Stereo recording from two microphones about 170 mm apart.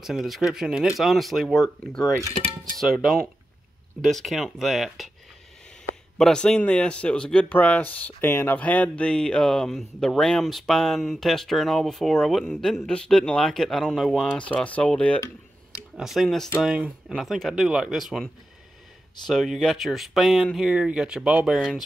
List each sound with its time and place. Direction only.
0.0 s speech: centre (ahead or behind)
6.1 s speech: 5° left (ahead or behind)